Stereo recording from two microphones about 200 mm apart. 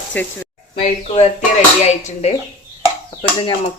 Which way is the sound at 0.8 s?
30° left (ahead or behind).